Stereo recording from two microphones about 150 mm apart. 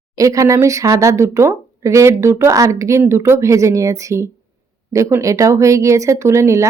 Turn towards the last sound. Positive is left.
turn(degrees=-20)  # may be behind; listen again after turning